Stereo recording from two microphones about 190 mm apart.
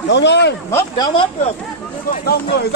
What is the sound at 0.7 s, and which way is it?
Speech, 15° left (ahead or behind).